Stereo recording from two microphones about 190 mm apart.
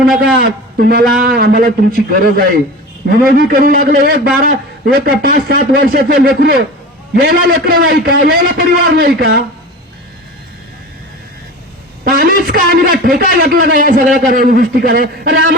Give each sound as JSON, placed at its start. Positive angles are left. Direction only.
{"t": 0.2, "sound": "a man's voice", "side_deg": -50}
{"t": 12.0, "sound": "a man's voice", "side_deg": -50}